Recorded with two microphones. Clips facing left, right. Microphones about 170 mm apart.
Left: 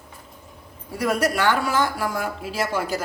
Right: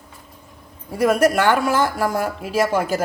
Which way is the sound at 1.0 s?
50° right (ahead or behind).